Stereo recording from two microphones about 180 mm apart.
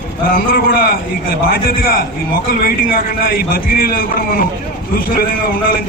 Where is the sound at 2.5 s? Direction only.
55° left (ahead or behind).